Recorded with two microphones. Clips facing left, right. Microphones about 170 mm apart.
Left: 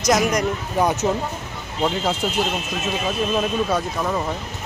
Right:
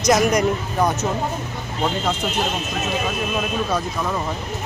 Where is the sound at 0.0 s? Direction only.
5° right (ahead or behind).